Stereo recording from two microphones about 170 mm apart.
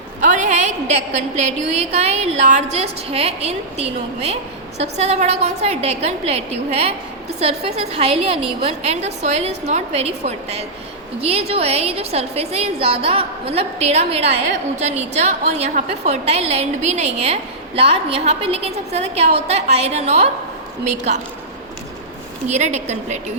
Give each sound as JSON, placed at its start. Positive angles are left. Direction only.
{"t": 0.2, "sound": "a sound", "side_deg": -45}
{"t": 2.0, "sound": "a woman's voice", "side_deg": -40}
{"t": 22.4, "sound": "a woman's voice", "side_deg": -45}